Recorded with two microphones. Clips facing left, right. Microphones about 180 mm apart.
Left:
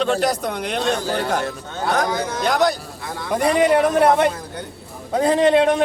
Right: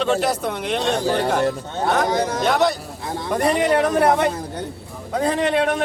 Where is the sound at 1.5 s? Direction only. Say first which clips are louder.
Right 3 dB; 35° right (ahead or behind).